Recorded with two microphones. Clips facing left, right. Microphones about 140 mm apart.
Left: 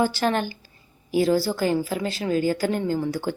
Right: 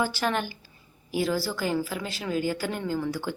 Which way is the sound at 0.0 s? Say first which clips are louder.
Left 5 dB; 30° left (ahead or behind).